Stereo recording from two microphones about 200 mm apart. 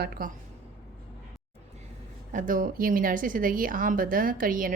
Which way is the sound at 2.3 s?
40° right (ahead or behind).